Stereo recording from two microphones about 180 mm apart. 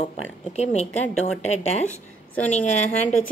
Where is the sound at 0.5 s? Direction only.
40° left (ahead or behind).